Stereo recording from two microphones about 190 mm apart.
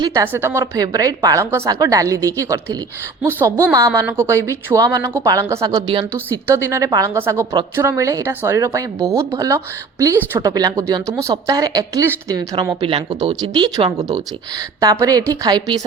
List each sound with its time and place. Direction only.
0.0 s a woman's voice: 15° right (ahead or behind)